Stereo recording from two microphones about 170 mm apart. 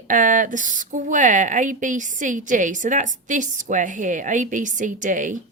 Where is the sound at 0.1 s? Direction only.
50° right (ahead or behind).